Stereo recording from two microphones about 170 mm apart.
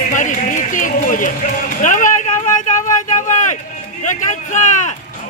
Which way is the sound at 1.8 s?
50° left (ahead or behind).